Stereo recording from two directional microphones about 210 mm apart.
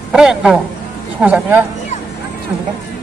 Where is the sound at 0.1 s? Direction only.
5° right (ahead or behind).